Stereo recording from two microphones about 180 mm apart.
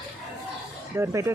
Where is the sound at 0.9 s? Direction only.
15° right (ahead or behind).